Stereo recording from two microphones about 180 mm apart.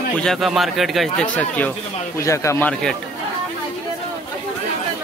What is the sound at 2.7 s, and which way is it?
Speech, 5° left (ahead or behind).